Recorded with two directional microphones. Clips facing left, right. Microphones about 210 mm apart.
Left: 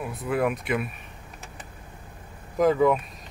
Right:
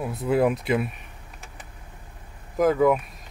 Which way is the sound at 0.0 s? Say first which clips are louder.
Right 4 dB; 25° right (ahead or behind).